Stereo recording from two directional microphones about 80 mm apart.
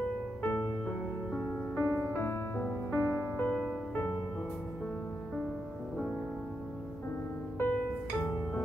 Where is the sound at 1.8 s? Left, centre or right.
Left.